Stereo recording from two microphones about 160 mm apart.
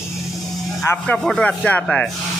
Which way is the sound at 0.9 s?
5° left (ahead or behind).